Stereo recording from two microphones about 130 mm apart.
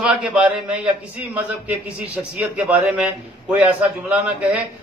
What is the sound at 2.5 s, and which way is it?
A man's voice, 10° right (ahead or behind).